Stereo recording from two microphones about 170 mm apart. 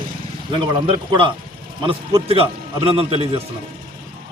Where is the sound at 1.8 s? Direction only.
30° right (ahead or behind).